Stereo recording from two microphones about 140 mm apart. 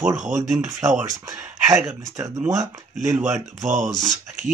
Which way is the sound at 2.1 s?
20° right (ahead or behind).